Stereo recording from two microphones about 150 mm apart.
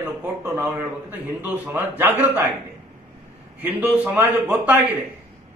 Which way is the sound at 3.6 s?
10° right (ahead or behind).